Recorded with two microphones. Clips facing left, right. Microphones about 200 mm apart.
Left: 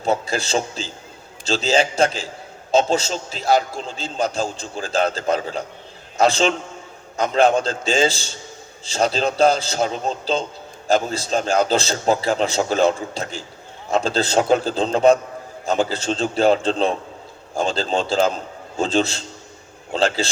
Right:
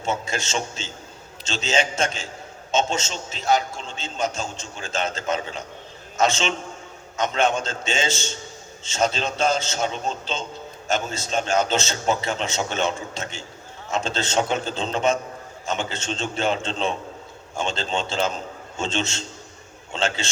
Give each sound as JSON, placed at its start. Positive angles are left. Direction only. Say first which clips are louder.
{"t": 0.0, "sound": "a man's voice", "louder": "left 5 dB", "side_deg": 35}